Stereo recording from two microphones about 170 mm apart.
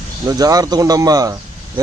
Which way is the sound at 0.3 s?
20° right (ahead or behind).